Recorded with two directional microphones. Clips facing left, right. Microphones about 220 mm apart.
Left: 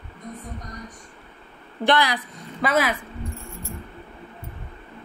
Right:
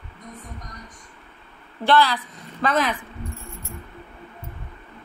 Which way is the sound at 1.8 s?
15° left (ahead or behind).